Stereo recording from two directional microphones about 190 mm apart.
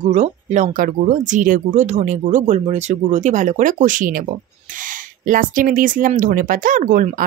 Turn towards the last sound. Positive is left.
turn(degrees=-45)  # may be behind; listen again after turning